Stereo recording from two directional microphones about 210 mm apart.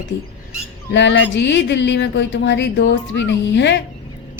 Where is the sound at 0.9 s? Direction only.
60° left (ahead or behind).